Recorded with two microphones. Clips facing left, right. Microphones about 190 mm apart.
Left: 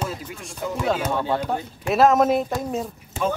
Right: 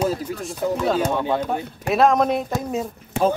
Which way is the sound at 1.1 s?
15° right (ahead or behind).